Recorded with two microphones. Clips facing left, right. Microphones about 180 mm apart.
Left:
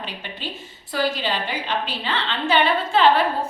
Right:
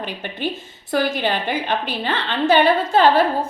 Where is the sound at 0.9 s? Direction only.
50° right (ahead or behind).